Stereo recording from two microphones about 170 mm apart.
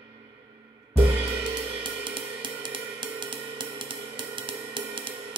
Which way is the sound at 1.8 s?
30° right (ahead or behind).